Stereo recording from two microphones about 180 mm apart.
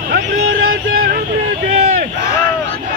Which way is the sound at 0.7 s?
55° right (ahead or behind).